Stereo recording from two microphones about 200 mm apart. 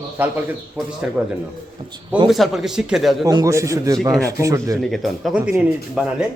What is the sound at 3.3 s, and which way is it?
Speech, 15° right (ahead or behind).